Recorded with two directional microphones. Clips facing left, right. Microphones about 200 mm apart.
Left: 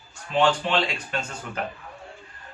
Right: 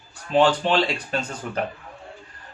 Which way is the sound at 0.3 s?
35° right (ahead or behind).